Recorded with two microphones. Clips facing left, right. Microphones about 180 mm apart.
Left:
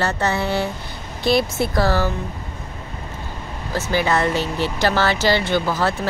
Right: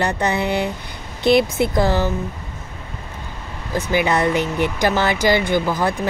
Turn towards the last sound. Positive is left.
turn(degrees=-15)  # may be behind; listen again after turning